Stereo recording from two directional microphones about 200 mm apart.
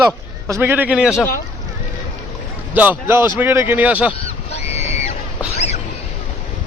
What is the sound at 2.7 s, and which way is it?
Speech, 10° right (ahead or behind).